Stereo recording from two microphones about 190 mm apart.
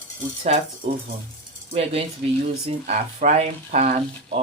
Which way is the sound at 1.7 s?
30° right (ahead or behind).